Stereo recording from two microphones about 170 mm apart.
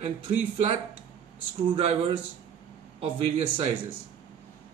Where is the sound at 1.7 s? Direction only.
35° right (ahead or behind).